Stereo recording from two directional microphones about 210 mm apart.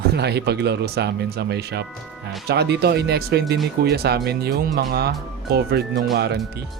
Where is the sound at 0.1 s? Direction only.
50° right (ahead or behind).